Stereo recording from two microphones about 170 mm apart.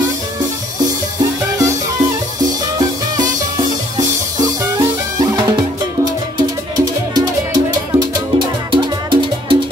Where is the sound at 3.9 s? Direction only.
20° right (ahead or behind).